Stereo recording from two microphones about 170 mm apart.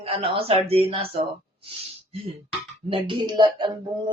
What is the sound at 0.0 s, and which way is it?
Speech, 35° right (ahead or behind).